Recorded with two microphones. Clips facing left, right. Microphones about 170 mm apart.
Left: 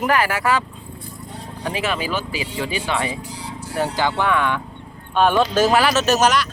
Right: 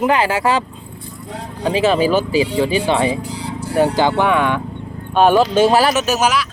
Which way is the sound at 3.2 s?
65° right (ahead or behind).